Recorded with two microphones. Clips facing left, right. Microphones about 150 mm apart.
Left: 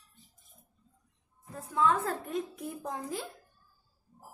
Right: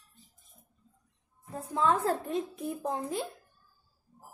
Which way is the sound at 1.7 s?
30° right (ahead or behind).